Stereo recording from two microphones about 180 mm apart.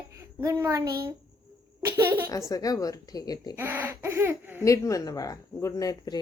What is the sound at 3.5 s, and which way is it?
A child's voice, 10° right (ahead or behind).